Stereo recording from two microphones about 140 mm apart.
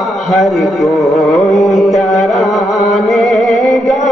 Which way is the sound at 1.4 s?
65° left (ahead or behind).